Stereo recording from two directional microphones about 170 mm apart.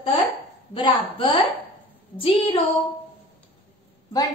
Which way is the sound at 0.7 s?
30° left (ahead or behind).